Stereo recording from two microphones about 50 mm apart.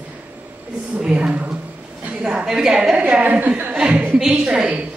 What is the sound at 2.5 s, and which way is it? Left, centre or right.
Speech, centre.